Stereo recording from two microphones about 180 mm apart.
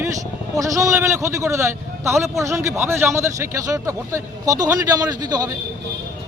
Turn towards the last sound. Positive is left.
turn(degrees=-20)  # may be behind; listen again after turning